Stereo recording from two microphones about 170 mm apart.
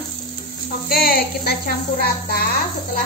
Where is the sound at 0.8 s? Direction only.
60° left (ahead or behind).